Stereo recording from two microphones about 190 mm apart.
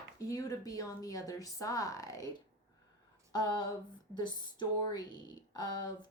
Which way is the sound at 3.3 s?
20° left (ahead or behind).